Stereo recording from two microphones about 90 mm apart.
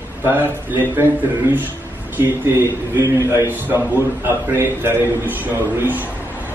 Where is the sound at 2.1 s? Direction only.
25° right (ahead or behind).